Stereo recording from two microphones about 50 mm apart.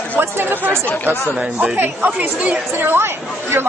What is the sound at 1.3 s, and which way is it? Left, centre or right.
A man's voice, right.